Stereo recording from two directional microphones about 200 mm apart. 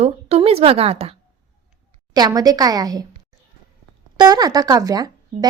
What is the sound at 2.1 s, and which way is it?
Speech, 20° right (ahead or behind).